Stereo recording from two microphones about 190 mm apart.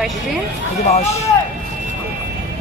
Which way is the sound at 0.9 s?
35° left (ahead or behind).